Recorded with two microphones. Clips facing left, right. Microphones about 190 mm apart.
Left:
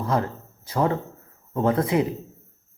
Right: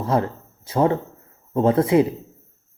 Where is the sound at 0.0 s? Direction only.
30° right (ahead or behind).